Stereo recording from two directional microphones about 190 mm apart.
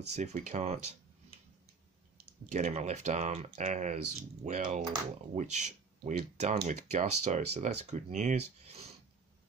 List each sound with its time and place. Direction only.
0.1 s speech: 40° right (ahead or behind)
2.5 s speech: 35° right (ahead or behind)